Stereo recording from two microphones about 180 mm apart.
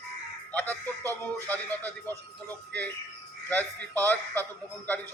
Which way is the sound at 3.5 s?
10° left (ahead or behind).